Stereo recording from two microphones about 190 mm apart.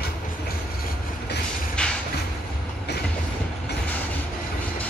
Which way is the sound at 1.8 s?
5° left (ahead or behind).